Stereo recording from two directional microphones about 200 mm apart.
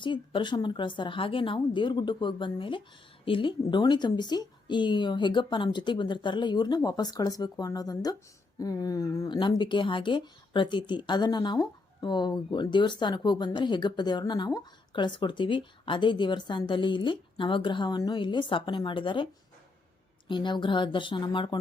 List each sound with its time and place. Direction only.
0.0 s speech: 25° left (ahead or behind)